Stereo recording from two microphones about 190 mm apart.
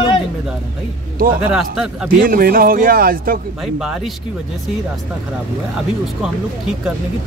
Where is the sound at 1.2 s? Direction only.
45° right (ahead or behind).